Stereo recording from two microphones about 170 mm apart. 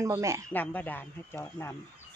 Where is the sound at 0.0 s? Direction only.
15° right (ahead or behind).